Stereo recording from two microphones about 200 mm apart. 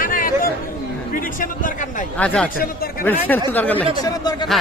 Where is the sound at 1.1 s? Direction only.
40° left (ahead or behind).